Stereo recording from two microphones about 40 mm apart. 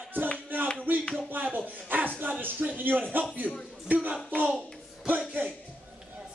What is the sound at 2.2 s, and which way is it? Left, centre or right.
Music, right.